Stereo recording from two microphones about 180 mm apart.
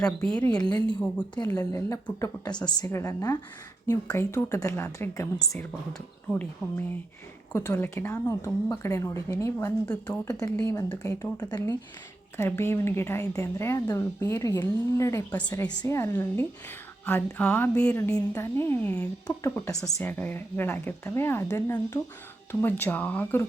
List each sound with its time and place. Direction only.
0.0 s a woman's voice: 5° left (ahead or behind)